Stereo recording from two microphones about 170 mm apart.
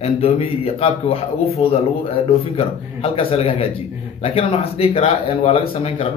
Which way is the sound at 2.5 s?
35° left (ahead or behind).